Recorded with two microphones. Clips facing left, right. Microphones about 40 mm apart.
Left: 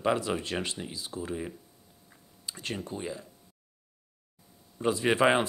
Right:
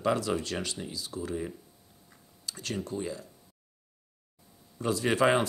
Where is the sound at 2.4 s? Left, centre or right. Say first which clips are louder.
Even; left.